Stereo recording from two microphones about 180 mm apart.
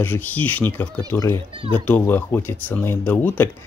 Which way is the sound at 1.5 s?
30° right (ahead or behind).